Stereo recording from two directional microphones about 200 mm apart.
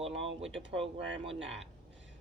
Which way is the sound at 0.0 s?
30° right (ahead or behind).